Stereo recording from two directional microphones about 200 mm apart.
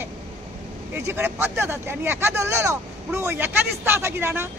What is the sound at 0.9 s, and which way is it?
Speech, 10° right (ahead or behind).